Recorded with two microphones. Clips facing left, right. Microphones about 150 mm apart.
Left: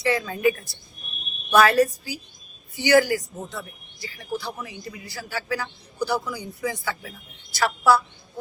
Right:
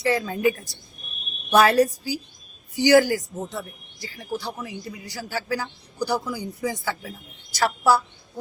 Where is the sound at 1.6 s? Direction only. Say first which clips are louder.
Even; 40° right (ahead or behind).